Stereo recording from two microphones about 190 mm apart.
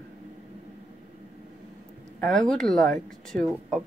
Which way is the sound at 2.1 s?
5° left (ahead or behind).